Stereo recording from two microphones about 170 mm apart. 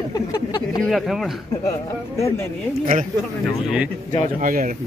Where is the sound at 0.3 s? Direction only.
25° left (ahead or behind).